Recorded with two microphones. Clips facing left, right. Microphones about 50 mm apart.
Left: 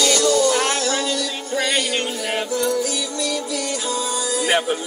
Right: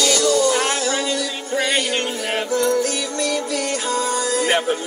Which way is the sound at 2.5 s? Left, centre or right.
Right.